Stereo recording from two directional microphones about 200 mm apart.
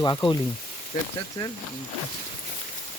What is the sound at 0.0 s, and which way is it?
Speech, 20° left (ahead or behind).